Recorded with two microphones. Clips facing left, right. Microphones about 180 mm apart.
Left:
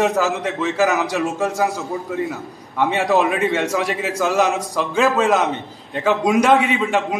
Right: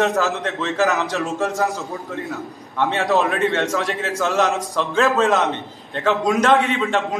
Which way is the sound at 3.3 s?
10° left (ahead or behind).